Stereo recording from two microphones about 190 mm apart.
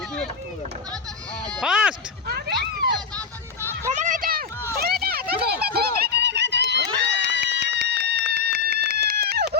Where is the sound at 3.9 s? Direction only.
45° right (ahead or behind).